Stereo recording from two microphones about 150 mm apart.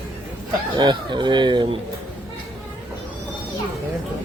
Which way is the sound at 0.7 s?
30° right (ahead or behind).